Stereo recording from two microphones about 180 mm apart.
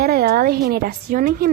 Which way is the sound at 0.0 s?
55° right (ahead or behind).